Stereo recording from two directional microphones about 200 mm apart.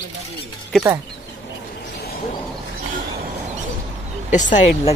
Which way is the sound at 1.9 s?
50° left (ahead or behind).